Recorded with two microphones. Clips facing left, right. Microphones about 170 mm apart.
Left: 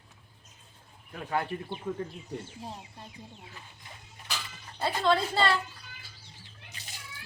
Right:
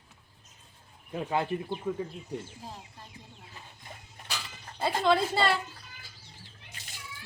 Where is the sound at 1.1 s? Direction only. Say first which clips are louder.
Right 2 dB; 20° right (ahead or behind).